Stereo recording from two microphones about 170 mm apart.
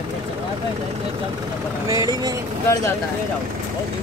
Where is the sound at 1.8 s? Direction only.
20° right (ahead or behind).